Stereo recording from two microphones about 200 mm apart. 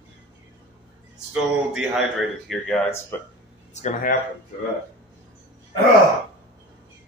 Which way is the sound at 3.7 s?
35° left (ahead or behind).